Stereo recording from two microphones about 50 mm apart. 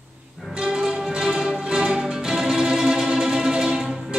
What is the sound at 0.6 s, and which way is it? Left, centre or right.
Music, centre.